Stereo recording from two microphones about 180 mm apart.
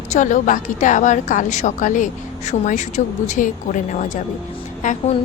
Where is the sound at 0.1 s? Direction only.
45° left (ahead or behind).